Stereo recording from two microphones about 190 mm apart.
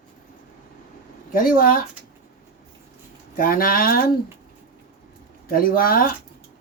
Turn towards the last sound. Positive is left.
turn(degrees=50)  # may be behind; listen again after turning